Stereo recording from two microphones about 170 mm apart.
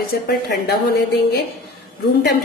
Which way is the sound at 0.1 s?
65° left (ahead or behind).